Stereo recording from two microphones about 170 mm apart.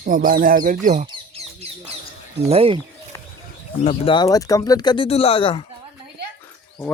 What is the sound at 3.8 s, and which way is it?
Speech, 40° left (ahead or behind).